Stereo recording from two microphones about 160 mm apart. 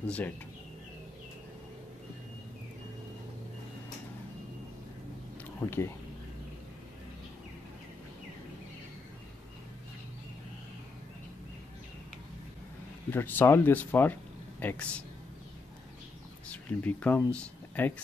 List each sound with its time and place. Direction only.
0.0 s speech: 10° left (ahead or behind)
5.7 s speech: 15° left (ahead or behind)
13.1 s speech: 15° left (ahead or behind)
16.4 s speech: 10° left (ahead or behind)